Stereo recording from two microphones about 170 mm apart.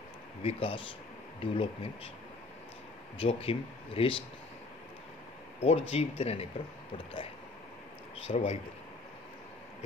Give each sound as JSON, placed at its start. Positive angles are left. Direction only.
{"t": 0.4, "sound": "speech", "side_deg": 30}
{"t": 3.2, "sound": "speech", "side_deg": 35}
{"t": 5.6, "sound": "speech", "side_deg": 40}
{"t": 8.3, "sound": "speech", "side_deg": 45}